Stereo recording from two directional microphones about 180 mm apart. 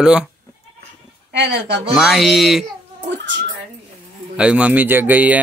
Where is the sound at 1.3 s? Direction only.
75° right (ahead or behind).